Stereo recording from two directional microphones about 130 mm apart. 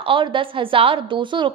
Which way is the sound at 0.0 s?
40° right (ahead or behind).